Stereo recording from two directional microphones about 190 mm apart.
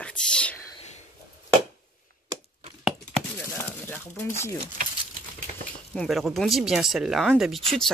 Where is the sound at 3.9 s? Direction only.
15° left (ahead or behind).